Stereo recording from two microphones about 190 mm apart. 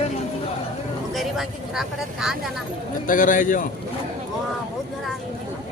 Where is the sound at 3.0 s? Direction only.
45° left (ahead or behind).